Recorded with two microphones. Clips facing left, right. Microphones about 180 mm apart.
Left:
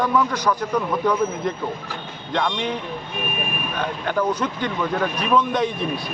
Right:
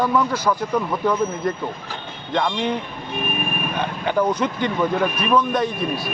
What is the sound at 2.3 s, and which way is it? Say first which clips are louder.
Speech: right 2 dB; 5° right (ahead or behind).